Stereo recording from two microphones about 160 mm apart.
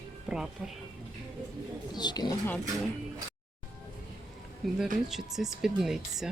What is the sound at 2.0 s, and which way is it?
Speech, 25° left (ahead or behind).